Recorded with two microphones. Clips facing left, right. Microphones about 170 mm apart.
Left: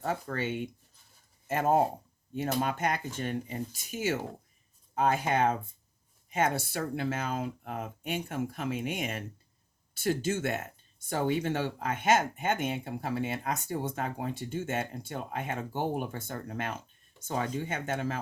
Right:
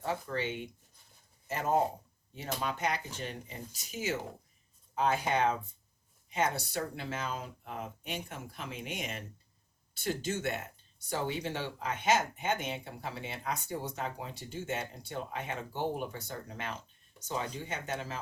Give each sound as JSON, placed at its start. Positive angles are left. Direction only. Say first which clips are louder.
{"t": 0.0, "sound": "speech", "louder": "left 2 dB", "side_deg": 50}